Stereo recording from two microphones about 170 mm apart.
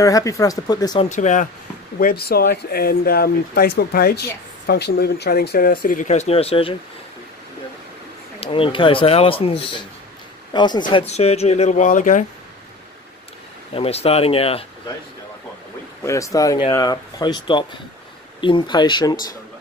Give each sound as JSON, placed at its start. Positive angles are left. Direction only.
{"t": 0.0, "sound": "speech", "side_deg": 20}
{"t": 1.0, "sound": "speech", "side_deg": 45}
{"t": 2.0, "sound": "speech", "side_deg": 60}
{"t": 8.4, "sound": "speech", "side_deg": 30}
{"t": 13.7, "sound": "speech", "side_deg": 35}
{"t": 16.0, "sound": "speech", "side_deg": 20}